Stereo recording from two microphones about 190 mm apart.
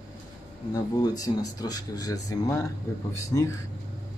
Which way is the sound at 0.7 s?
20° left (ahead or behind).